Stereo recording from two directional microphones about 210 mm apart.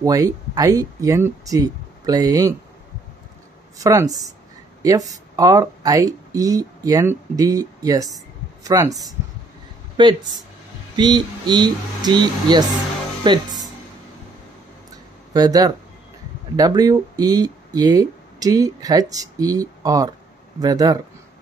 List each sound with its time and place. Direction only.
0.0 s speech: 15° right (ahead or behind)
3.7 s speech: 15° right (ahead or behind)
15.3 s speech: 15° right (ahead or behind)